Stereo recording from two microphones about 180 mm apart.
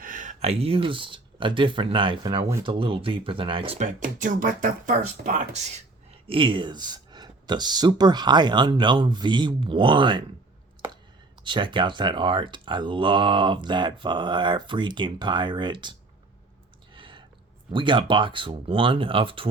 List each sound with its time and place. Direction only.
0.0 s speech: 45° right (ahead or behind); by 3.8 s 30° right (ahead or behind)
3.8 s speech: 50° right (ahead or behind); by 10.2 s 25° right (ahead or behind)
11.4 s speech: 25° right (ahead or behind)
16.9 s a sound: 25° right (ahead or behind)
17.7 s speech: 25° right (ahead or behind)